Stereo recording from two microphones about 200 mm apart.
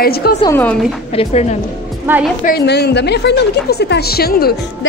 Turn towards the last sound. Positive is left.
turn(degrees=50)  # may be behind; listen again after turning